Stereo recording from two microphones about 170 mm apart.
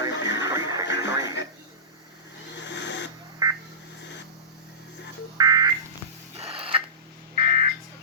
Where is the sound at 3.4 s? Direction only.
20° right (ahead or behind).